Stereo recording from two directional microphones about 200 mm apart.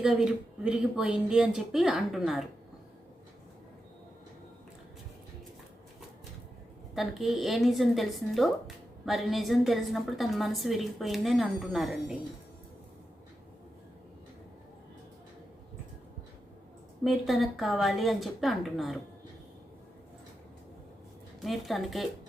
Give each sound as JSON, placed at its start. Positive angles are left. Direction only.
{"t": 0.0, "sound": "a woman's voice", "side_deg": -5}
{"t": 6.9, "sound": "a woman's voice", "side_deg": 0}
{"t": 17.0, "sound": "a woman's voice", "side_deg": 0}
{"t": 21.4, "sound": "a woman's voice", "side_deg": 0}